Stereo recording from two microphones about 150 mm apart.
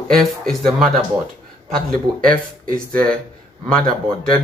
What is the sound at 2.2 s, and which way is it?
Speech, 70° right (ahead or behind).